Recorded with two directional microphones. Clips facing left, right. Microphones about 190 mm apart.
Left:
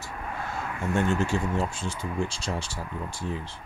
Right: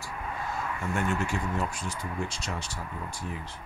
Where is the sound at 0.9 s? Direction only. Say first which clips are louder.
Left 5 dB; 30° left (ahead or behind).